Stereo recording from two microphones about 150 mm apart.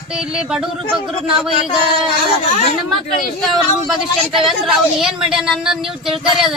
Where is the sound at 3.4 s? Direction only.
Centre (ahead or behind).